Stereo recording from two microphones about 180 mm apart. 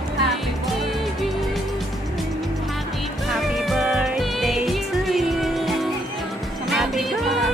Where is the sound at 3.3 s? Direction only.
Centre (ahead or behind).